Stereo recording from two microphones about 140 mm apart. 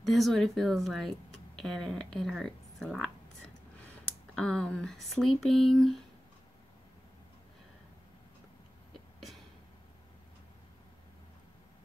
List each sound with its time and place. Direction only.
0.0 s speech: centre (ahead or behind)
4.4 s speech: 5° left (ahead or behind)